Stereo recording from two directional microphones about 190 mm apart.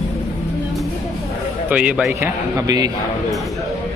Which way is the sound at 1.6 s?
5° right (ahead or behind).